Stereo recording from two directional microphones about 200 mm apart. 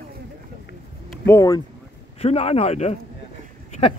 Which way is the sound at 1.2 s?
15° left (ahead or behind).